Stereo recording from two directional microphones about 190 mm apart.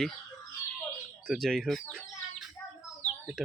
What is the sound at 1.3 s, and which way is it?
Chicken, centre (ahead or behind).